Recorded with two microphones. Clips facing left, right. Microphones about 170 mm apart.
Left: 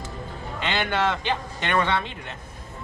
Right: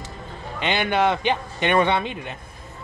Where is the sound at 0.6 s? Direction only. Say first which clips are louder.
Right 4 dB; 15° right (ahead or behind).